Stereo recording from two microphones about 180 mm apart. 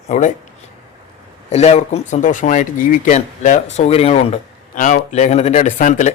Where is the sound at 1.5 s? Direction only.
35° left (ahead or behind).